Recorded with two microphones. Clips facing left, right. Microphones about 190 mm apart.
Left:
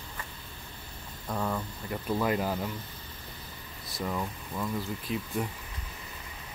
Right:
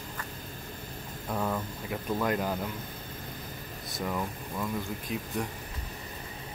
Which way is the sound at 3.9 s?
Centre (ahead or behind).